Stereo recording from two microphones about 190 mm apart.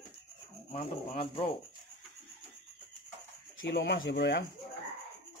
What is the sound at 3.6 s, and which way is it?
Speech, 65° left (ahead or behind).